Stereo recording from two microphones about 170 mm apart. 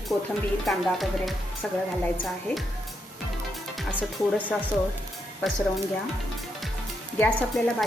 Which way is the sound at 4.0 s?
10° right (ahead or behind).